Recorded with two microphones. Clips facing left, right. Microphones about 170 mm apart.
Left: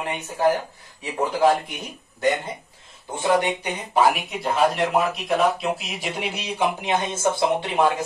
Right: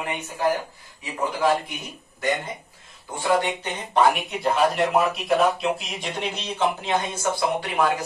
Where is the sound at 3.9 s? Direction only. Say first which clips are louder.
Even; centre (ahead or behind).